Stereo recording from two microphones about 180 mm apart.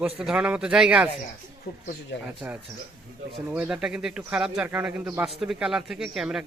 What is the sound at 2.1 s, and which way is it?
Speech, 80° left.